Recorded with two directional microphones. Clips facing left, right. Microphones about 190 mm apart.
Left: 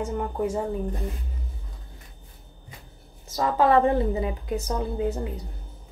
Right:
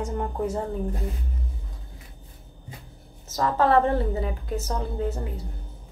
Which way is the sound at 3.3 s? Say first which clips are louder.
Left 1 dB; 15° left (ahead or behind).